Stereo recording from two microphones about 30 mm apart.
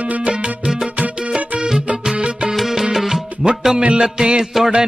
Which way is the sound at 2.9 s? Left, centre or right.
Centre.